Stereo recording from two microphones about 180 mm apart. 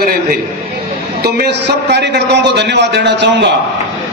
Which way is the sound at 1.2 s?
65° right (ahead or behind).